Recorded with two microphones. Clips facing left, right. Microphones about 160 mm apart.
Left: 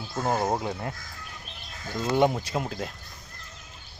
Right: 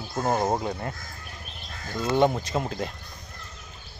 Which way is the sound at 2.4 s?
5° left (ahead or behind).